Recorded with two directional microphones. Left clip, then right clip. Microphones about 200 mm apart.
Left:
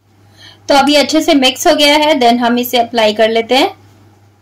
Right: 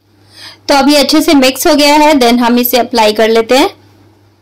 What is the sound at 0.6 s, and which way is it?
A woman's voice, 35° right (ahead or behind).